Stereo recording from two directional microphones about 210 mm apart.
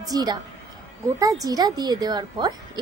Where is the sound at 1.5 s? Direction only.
20° right (ahead or behind).